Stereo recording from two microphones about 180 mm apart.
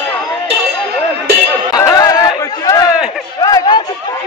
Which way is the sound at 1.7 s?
20° left (ahead or behind).